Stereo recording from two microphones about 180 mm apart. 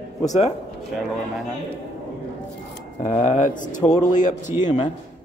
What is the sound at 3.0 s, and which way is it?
Speech, 40° left (ahead or behind).